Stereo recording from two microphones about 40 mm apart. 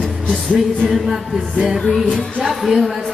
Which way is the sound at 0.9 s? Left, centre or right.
Centre.